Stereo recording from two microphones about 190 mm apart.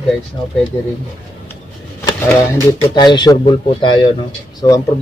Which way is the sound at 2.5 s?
20° left (ahead or behind).